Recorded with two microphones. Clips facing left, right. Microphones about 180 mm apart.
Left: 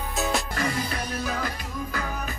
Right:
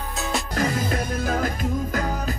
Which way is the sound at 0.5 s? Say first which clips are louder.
Right 4 dB; 45° right (ahead or behind).